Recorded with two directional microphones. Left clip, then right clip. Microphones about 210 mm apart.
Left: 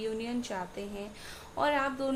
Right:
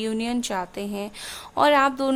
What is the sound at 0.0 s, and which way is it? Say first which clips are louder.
A woman's voice: right 8 dB; 50° right (ahead or behind).